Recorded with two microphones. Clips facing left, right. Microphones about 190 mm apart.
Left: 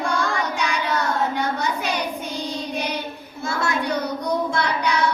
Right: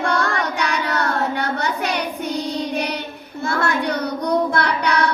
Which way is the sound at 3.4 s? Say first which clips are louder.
Right 3 dB; 60° right (ahead or behind).